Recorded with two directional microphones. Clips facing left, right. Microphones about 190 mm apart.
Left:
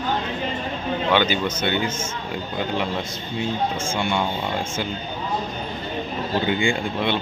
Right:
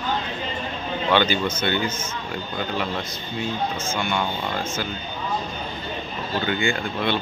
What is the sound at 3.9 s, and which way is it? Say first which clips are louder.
Speech: left 2 dB; 30° left (ahead or behind).